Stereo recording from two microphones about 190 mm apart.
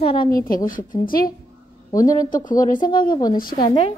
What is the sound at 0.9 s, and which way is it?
Speech, 50° left (ahead or behind).